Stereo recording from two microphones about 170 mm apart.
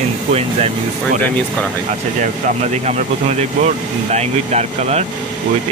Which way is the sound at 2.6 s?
40° right (ahead or behind).